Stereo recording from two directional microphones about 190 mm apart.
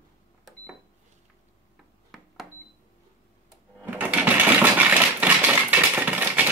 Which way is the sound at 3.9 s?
10° right (ahead or behind).